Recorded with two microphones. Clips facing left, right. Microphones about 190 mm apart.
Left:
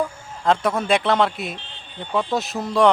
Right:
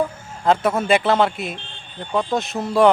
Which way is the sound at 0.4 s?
5° right (ahead or behind).